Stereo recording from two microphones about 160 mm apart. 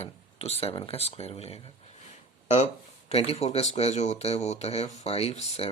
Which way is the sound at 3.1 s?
40° left (ahead or behind).